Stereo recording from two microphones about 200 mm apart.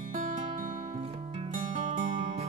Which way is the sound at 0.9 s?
30° right (ahead or behind).